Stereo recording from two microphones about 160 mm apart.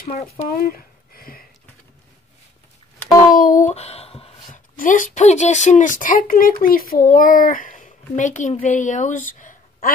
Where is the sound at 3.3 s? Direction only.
60° left (ahead or behind); by 4.3 s 40° left (ahead or behind).